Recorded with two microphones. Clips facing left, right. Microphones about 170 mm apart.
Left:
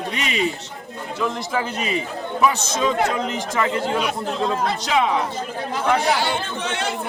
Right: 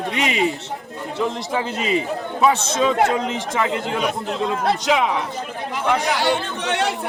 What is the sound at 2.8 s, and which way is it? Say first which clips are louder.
Speech: right 1 dB; 20° right (ahead or behind).